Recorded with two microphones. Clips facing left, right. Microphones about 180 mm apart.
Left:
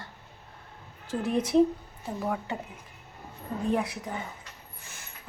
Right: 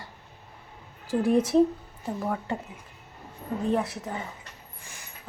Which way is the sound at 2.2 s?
5° left (ahead or behind).